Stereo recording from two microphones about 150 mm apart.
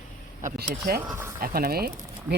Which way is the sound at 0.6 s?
90° right.